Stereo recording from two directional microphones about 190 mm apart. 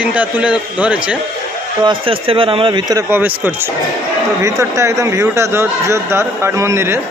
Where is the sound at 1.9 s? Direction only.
30° right (ahead or behind).